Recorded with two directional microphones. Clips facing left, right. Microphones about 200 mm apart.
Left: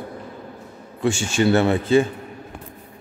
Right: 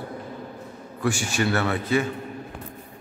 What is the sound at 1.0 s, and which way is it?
Speech, 25° left (ahead or behind).